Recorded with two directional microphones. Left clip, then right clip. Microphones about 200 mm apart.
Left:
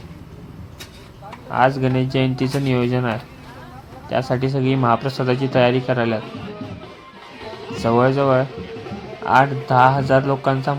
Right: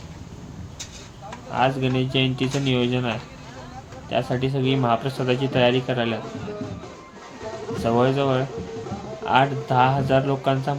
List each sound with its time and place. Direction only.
1.5 s a man's voice: 25° left (ahead or behind)
7.8 s a man's voice: 25° left (ahead or behind)